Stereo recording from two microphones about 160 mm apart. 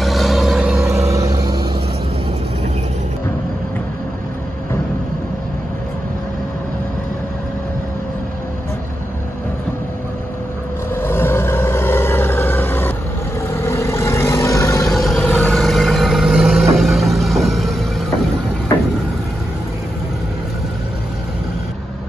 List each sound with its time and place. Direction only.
0.0 s vehicle: centre (ahead or behind)
0.7 s vehicle: 20° right (ahead or behind)
11.0 s vehicle: 15° left (ahead or behind)
14.9 s vehicle: centre (ahead or behind)